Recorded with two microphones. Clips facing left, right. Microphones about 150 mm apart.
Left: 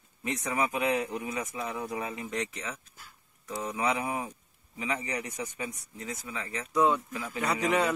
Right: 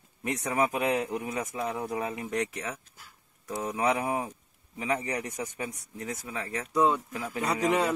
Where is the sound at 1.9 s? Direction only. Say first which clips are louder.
Right 3 dB; 35° right (ahead or behind).